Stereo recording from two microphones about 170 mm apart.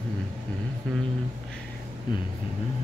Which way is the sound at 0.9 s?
5° left (ahead or behind).